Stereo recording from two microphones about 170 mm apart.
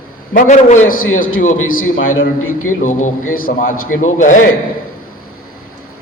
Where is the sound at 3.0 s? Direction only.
55° left (ahead or behind).